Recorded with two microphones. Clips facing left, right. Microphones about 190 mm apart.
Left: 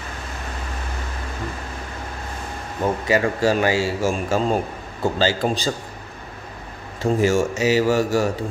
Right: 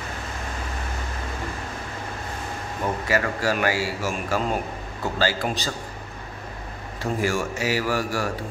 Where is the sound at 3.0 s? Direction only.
20° left (ahead or behind).